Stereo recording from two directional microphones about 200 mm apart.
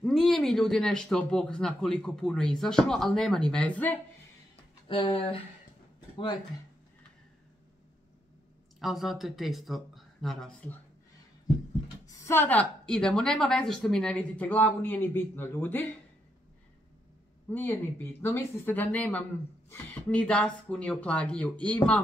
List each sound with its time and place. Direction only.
0.0 s speech: centre (ahead or behind)
4.8 s speech: 25° left (ahead or behind)
5.9 s a sound: 25° left (ahead or behind)
8.7 s speech: centre (ahead or behind)
12.1 s a woman's voice: 10° left (ahead or behind)
17.5 s a woman's voice: 10° left (ahead or behind)